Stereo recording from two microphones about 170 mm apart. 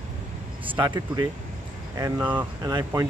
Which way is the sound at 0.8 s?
25° right (ahead or behind).